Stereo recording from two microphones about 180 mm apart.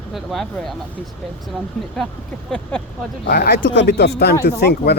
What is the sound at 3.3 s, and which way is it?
Speech, 60° left (ahead or behind).